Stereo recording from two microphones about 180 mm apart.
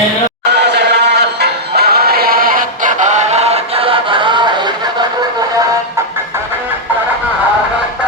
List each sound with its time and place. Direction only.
0.5 s music: 70° right (ahead or behind); by 4.7 s 25° right (ahead or behind)